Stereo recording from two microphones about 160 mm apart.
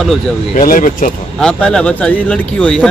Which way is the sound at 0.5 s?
60° left (ahead or behind).